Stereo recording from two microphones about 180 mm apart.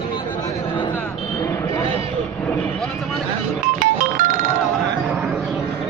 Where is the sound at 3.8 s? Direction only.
50° right (ahead or behind).